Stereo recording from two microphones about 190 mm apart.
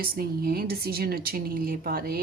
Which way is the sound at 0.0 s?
50° right (ahead or behind).